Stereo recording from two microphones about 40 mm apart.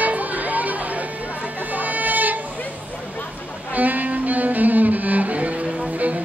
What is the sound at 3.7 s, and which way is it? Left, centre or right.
Music, right.